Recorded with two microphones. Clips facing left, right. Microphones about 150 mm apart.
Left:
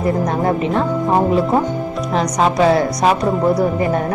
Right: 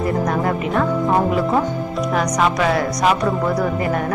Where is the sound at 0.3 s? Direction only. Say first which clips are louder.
Left 3 dB; 30° left (ahead or behind).